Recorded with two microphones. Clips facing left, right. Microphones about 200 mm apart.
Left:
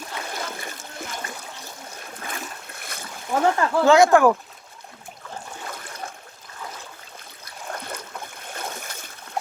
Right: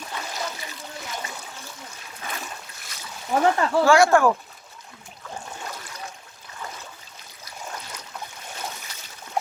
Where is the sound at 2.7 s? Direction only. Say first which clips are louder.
Left 5 dB; 55° left (ahead or behind).